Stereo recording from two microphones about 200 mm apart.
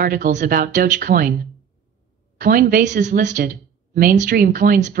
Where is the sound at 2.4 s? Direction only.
45° right (ahead or behind).